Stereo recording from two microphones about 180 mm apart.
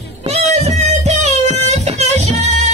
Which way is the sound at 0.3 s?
35° right (ahead or behind).